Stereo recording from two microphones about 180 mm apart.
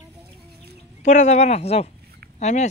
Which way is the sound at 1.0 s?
40° left (ahead or behind).